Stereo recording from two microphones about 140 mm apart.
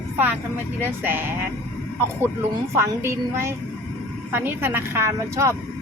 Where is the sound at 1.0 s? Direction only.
15° right (ahead or behind).